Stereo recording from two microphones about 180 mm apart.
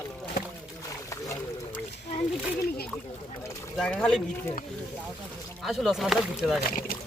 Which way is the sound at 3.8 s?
5° left (ahead or behind).